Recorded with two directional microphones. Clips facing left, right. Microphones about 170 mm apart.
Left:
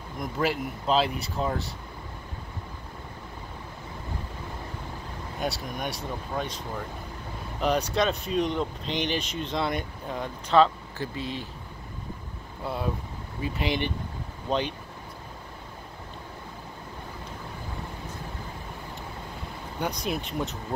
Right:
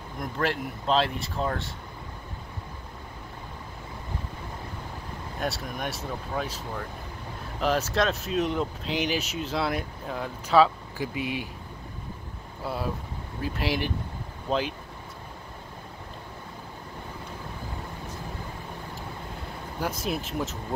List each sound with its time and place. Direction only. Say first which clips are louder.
0.2 s speech: left 1 dB; centre (ahead or behind)
5.4 s speech: even; centre (ahead or behind)
12.6 s speech: even; centre (ahead or behind)
19.8 s speech: even; centre (ahead or behind)